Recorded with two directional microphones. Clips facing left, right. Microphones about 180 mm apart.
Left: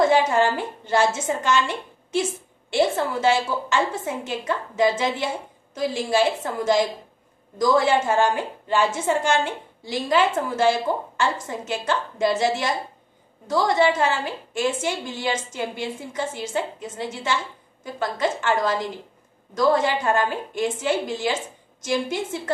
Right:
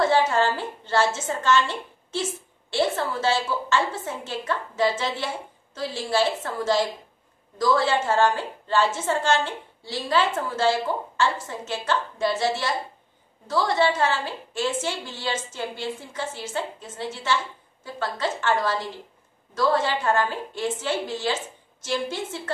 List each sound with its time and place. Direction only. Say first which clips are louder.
0.0 s a woman's voice: left 2 dB; 15° left (ahead or behind)